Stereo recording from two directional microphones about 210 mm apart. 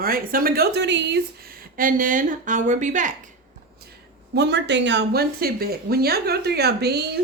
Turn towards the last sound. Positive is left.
turn(degrees=-50)  # may be behind; listen again after turning